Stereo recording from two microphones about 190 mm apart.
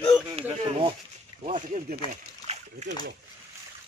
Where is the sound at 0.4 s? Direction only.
25° right (ahead or behind).